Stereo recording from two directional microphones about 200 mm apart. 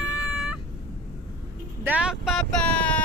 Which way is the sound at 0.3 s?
5° right (ahead or behind).